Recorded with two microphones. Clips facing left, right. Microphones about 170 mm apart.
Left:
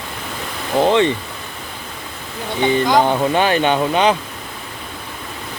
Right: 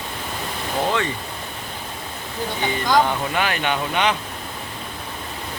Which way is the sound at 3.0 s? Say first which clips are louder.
Left 7 dB; 30° left (ahead or behind).